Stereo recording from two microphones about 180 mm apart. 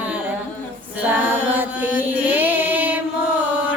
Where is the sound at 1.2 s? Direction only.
10° right (ahead or behind).